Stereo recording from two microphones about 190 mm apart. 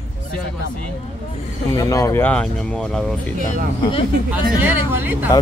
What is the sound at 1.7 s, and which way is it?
Speech, 15° left (ahead or behind).